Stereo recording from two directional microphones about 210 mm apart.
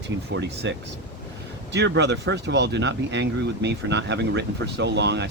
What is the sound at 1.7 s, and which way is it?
Speech, 55° right (ahead or behind).